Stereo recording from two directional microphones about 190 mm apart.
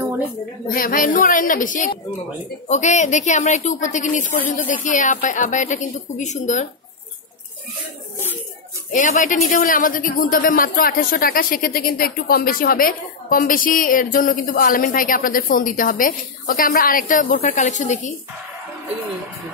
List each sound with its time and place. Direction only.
0.7 s speech: 45° left (ahead or behind)
8.9 s speech: 40° left (ahead or behind)